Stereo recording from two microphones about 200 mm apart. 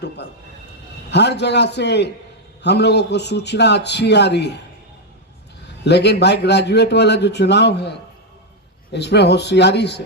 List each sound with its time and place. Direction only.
1.1 s a man's voice: 60° left (ahead or behind)
5.8 s a man's voice: 55° left (ahead or behind)